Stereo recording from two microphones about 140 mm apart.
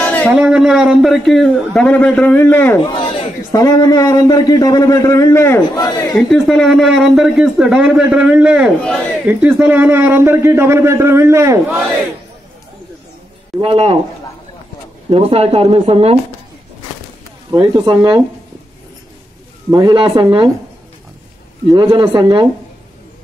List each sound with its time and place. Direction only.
0.0 s a sound: 10° left (ahead or behind)
0.3 s speech: 5° right (ahead or behind); by 2.8 s 15° left (ahead or behind)
2.9 s chatter: 40° left (ahead or behind)
3.5 s a man's voice: 25° left (ahead or behind)
6.1 s a man's voice: centre (ahead or behind); by 11.8 s 20° right (ahead or behind)
13.6 s speech: 45° right (ahead or behind)
15.0 s speech: 45° right (ahead or behind)
17.5 s speech: 30° right (ahead or behind)
19.7 s speech: 30° right (ahead or behind)
21.6 s speech: 30° right (ahead or behind)